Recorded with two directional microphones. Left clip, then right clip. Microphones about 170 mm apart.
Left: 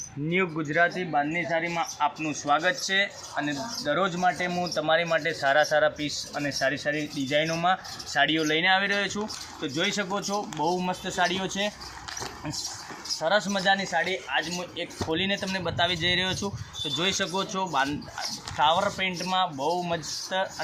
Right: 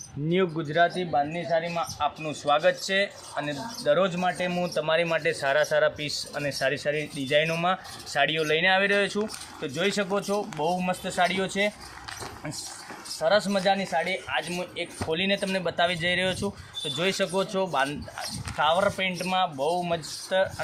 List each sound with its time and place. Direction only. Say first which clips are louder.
0.3 s speech: right 1 dB; 75° right (ahead or behind); by 11.7 s 35° right (ahead or behind)
13.1 s speech: right 2 dB; 45° right (ahead or behind)